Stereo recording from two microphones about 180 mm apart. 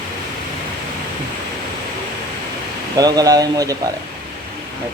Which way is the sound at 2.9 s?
20° right (ahead or behind).